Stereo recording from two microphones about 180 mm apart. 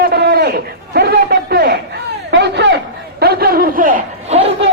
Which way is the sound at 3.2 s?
60° right (ahead or behind).